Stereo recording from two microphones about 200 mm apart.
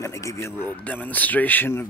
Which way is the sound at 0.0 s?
15° left (ahead or behind).